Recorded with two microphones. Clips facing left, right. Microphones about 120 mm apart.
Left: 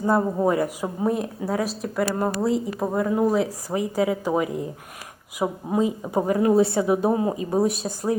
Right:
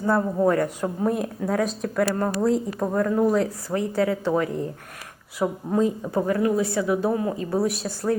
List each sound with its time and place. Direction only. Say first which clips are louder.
0.0 s a woman's voice: even; 15° left (ahead or behind)